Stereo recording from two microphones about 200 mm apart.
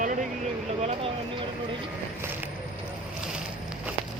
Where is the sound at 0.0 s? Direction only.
40° right (ahead or behind).